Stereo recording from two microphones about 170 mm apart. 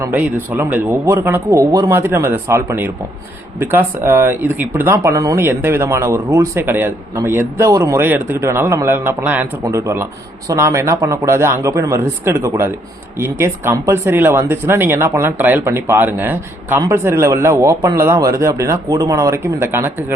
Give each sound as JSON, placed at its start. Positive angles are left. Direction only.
{"t": 0.0, "sound": "speech", "side_deg": -10}